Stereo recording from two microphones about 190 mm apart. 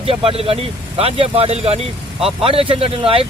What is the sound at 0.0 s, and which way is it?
A man's voice, 30° right (ahead or behind).